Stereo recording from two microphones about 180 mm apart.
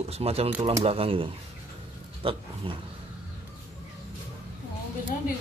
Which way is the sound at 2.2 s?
30° right (ahead or behind).